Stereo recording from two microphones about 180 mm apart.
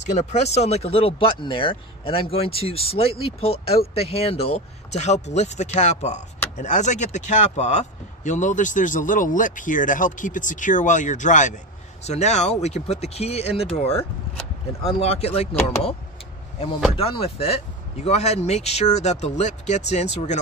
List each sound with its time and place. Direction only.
0.0 s speech: 40° left (ahead or behind)
13.9 s vehicle: 5° left (ahead or behind)
14.9 s speech: 35° left (ahead or behind)
16.9 s speech: 30° left (ahead or behind)